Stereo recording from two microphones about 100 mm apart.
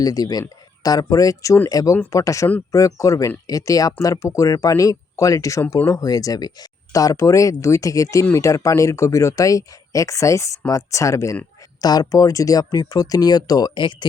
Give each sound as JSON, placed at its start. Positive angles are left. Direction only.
{"t": 0.0, "sound": "speech", "side_deg": 40}